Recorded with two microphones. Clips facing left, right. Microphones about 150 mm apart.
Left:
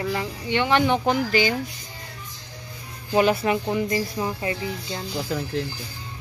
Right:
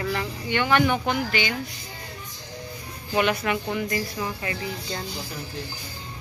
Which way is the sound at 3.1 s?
30° left (ahead or behind).